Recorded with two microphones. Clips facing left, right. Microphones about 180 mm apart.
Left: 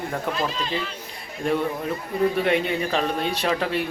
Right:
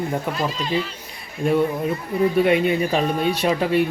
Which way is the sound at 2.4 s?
10° right (ahead or behind).